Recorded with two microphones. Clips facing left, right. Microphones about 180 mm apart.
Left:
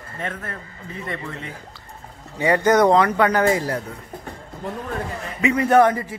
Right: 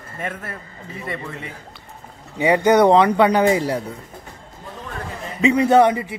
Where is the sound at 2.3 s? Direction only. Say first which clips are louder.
Right 2 dB; 15° right (ahead or behind).